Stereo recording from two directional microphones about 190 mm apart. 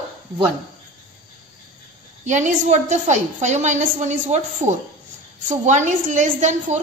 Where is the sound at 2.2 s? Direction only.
40° right (ahead or behind).